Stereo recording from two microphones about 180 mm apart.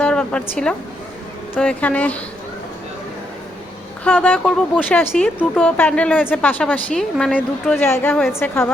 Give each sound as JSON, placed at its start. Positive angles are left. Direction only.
{"t": 0.0, "sound": "a sound", "side_deg": 5}
{"t": 1.5, "sound": "a woman's voice", "side_deg": 5}
{"t": 4.0, "sound": "a woman's voice", "side_deg": 5}